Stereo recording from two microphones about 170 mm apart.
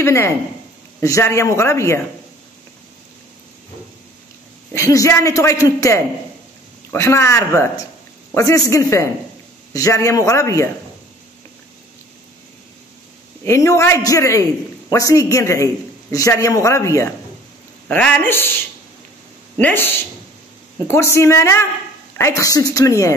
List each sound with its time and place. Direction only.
0.0 s a man's voice: 15° left (ahead or behind)
4.7 s a man's voice: 20° left (ahead or behind)
13.5 s a man's voice: 15° left (ahead or behind)
19.6 s a man's voice: 15° left (ahead or behind)
20.9 s a man's voice: 15° left (ahead or behind)